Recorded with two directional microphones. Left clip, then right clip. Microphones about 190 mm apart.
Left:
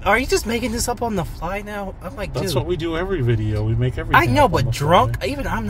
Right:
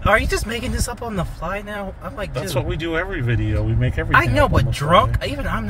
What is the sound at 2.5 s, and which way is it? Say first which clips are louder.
Speech: right 1 dB; 25° left (ahead or behind).